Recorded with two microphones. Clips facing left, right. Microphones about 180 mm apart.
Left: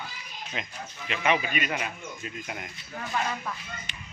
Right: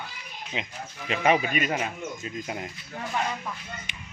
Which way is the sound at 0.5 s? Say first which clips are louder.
Right 3 dB; 15° right (ahead or behind).